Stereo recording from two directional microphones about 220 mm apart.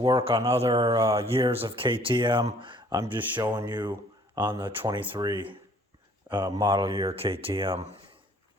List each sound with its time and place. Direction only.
0.0 s speech: 25° right (ahead or behind)
1.2 s speech: 25° right (ahead or behind)
3.2 s speech: 10° right (ahead or behind)
3.5 s speech: 20° right (ahead or behind)